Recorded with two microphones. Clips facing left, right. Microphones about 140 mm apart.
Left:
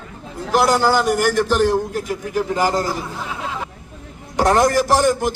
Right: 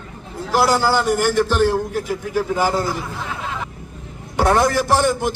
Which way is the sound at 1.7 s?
10° right (ahead or behind).